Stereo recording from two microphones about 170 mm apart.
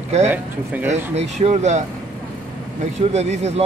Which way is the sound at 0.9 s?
40° right (ahead or behind).